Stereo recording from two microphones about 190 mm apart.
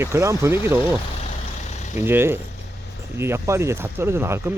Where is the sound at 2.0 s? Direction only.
10° right (ahead or behind).